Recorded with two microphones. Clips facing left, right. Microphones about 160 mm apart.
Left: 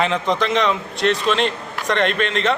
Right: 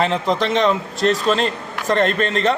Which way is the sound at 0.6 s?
35° right (ahead or behind).